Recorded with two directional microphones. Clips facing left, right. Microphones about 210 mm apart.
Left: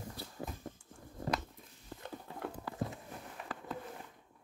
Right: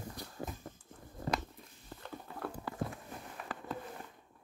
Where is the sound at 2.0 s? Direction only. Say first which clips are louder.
Even; 20° left (ahead or behind).